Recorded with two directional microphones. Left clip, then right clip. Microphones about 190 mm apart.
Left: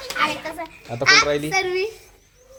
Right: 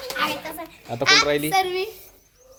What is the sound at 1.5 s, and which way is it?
Speech, 45° right (ahead or behind).